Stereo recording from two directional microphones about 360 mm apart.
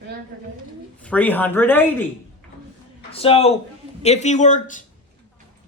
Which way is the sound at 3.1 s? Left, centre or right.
Centre.